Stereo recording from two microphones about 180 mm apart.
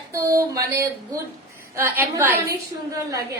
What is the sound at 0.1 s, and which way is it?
A woman's voice, 15° right (ahead or behind).